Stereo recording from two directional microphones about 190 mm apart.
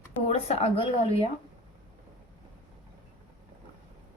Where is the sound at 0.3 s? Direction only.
35° left (ahead or behind).